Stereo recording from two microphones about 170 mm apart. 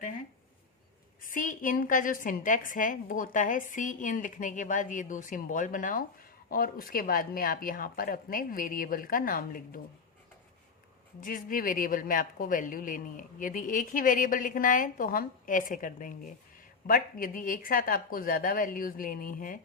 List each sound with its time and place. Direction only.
1.2 s speech: 55° left (ahead or behind)
11.2 s speech: 55° left (ahead or behind)